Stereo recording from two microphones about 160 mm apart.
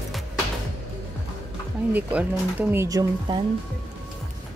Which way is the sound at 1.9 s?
10° right (ahead or behind).